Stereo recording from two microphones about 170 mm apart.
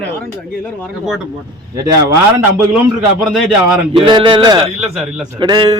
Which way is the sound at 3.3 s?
Centre (ahead or behind).